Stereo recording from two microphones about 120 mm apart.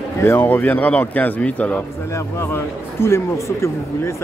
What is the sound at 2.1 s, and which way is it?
Speech, 20° left (ahead or behind).